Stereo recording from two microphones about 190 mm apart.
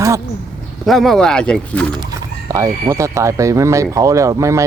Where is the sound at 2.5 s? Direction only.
15° right (ahead or behind).